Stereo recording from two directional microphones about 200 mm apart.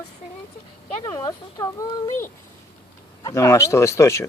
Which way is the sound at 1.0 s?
20° left (ahead or behind).